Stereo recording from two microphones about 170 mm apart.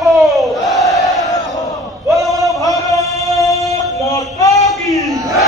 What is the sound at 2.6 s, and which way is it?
Singing, 20° left (ahead or behind).